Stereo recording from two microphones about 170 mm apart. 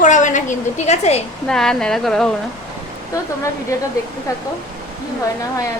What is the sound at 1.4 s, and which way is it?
Speech, 5° left (ahead or behind).